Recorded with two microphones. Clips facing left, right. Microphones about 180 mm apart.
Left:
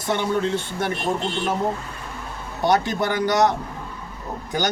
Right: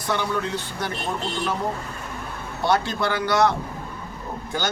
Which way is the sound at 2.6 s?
20° left (ahead or behind).